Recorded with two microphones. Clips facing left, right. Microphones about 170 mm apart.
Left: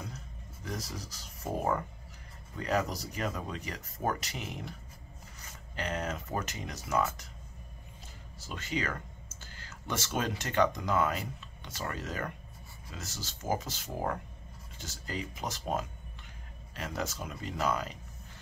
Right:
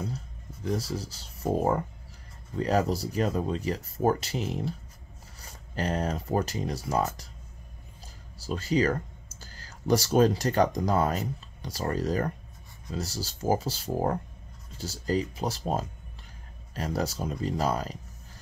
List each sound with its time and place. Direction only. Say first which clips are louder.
0.7 s speech: right 9 dB; 30° right (ahead or behind)
8.4 s speech: right 10 dB; 35° right (ahead or behind)